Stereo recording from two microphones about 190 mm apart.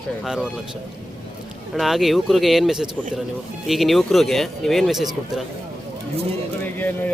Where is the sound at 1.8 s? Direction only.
Centre (ahead or behind).